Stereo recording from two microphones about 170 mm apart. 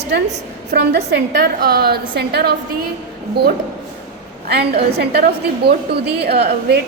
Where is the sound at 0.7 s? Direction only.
85° right.